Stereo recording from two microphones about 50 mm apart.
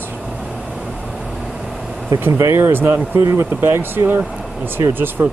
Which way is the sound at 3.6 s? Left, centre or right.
Right.